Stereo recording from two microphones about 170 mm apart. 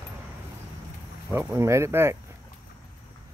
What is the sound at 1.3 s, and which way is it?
Speech, 15° right (ahead or behind).